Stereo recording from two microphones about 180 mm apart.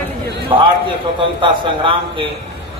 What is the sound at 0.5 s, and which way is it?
A man's voice, 30° right (ahead or behind).